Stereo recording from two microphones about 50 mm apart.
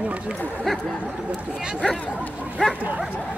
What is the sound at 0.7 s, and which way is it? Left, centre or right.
Speech, centre.